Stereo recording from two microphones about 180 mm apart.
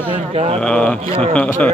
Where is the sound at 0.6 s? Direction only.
5° left (ahead or behind).